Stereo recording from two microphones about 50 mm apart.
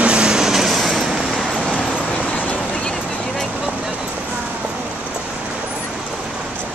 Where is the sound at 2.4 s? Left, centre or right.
Left.